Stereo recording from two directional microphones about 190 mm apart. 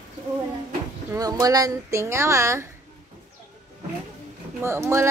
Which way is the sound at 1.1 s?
20° right (ahead or behind).